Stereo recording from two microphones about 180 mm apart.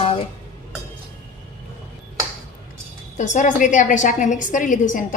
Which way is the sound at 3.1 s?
40° left (ahead or behind).